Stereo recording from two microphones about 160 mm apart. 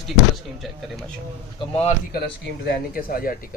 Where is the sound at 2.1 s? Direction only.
75° left (ahead or behind).